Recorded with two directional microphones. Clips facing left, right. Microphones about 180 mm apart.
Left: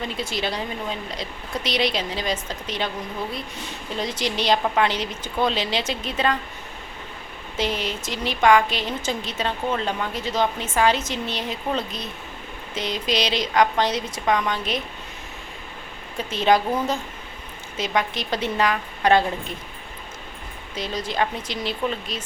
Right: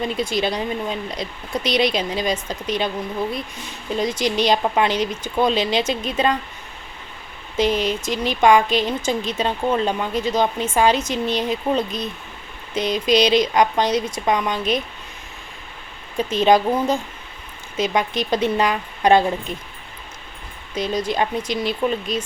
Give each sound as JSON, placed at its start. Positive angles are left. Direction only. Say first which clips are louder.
{"t": 0.2, "sound": "speech", "louder": "right 4 dB", "side_deg": -15}
{"t": 3.9, "sound": "speech", "louder": "right 6 dB", "side_deg": -15}
{"t": 7.5, "sound": "speech", "louder": "right 6 dB", "side_deg": -15}
{"t": 16.3, "sound": "speech", "louder": "right 3 dB", "side_deg": -15}
{"t": 20.7, "sound": "speech", "louder": "right 4 dB", "side_deg": -15}